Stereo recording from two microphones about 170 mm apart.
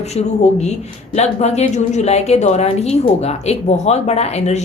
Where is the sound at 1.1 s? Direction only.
40° left (ahead or behind).